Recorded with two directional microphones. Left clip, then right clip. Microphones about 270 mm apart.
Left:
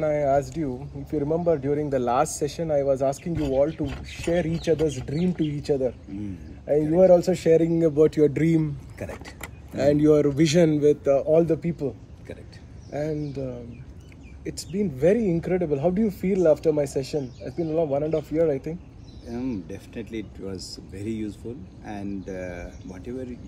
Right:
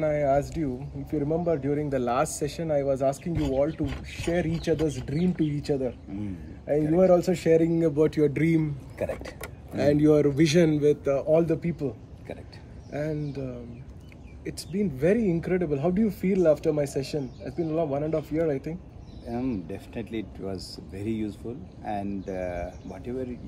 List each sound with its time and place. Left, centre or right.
0.0 s speech: centre
7.0 s speech: centre
8.9 s speech: right
9.8 s speech: centre
12.9 s speech: centre
19.2 s speech: centre
20.5 s speech: centre
20.9 s speech: centre